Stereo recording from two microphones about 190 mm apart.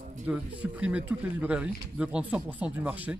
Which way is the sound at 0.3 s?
5° right (ahead or behind).